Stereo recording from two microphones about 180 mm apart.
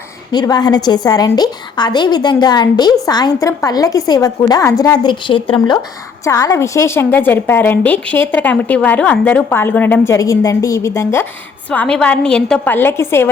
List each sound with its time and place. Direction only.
0.3 s a woman's voice: 25° left (ahead or behind)